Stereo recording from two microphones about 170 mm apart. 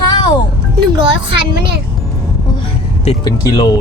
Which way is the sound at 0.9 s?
30° right (ahead or behind).